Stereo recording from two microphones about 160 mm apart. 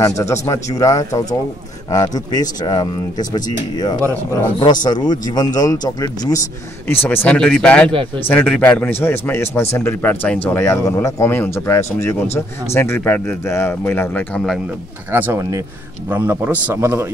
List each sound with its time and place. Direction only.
0.0 s speech: 20° left (ahead or behind); by 14.6 s 5° left (ahead or behind)
15.0 s a man's voice: 15° right (ahead or behind)